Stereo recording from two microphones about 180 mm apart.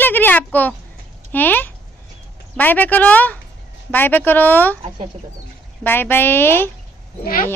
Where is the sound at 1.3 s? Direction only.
10° left (ahead or behind).